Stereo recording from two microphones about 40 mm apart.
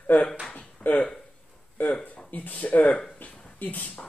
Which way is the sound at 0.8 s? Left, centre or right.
Left.